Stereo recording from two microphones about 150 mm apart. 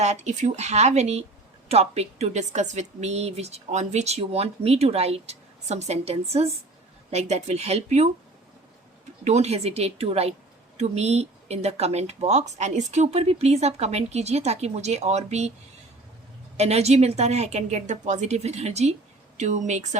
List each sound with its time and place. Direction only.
0.0 s speech: 50° right (ahead or behind)
9.2 s speech: 45° right (ahead or behind)
16.6 s speech: 45° right (ahead or behind)